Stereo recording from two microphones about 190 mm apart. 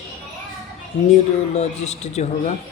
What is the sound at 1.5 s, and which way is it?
Speech, 35° left (ahead or behind).